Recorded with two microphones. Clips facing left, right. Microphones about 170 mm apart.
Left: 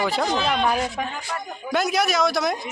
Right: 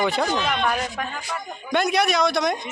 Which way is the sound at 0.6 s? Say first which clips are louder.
Left 2 dB; 20° left (ahead or behind).